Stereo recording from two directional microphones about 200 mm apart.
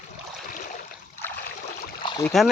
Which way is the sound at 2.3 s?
Centre (ahead or behind).